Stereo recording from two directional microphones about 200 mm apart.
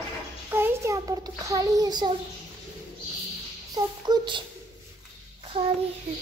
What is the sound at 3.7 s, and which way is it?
Speech, 20° right (ahead or behind).